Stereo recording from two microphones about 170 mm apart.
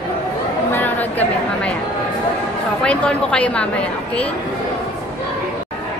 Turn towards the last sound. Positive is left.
turn(degrees=5)  # may be behind; listen again after turning